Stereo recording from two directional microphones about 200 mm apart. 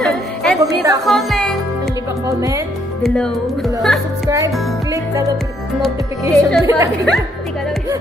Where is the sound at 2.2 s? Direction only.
15° right (ahead or behind).